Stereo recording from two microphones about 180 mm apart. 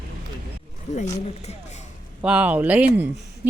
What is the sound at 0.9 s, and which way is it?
Speech, 40° left (ahead or behind).